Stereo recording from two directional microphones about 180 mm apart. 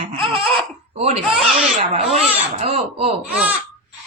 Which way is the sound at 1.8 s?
35° right (ahead or behind).